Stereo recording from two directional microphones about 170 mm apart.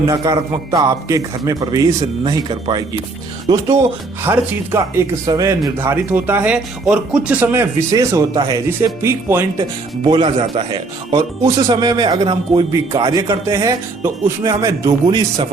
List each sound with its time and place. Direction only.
0.1 s a man's voice: 25° right (ahead or behind)
4.2 s speech: 10° right (ahead or behind)
10.0 s a man's voice: 30° right (ahead or behind)